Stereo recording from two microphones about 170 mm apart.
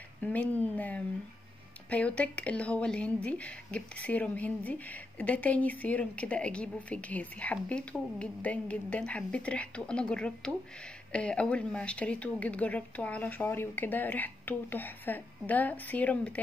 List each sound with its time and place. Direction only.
0.2 s a woman's voice: 10° left (ahead or behind)